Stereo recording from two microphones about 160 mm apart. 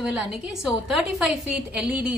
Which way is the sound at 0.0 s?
Centre (ahead or behind).